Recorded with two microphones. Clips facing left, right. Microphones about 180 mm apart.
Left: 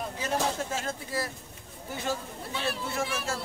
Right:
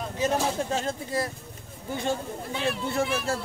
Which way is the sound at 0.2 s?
25° right (ahead or behind).